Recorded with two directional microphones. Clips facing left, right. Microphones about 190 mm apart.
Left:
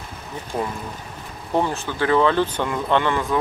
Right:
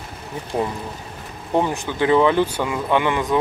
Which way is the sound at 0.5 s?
20° right (ahead or behind).